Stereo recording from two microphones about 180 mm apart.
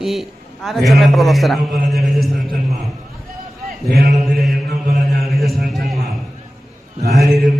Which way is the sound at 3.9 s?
60° right (ahead or behind).